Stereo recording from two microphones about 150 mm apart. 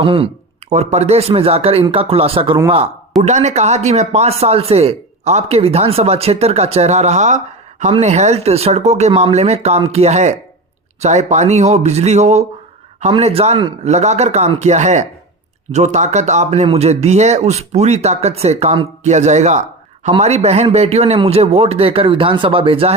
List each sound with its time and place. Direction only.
0.0 s a man's voice: 35° right (ahead or behind)
0.7 s a man's voice: 50° right (ahead or behind)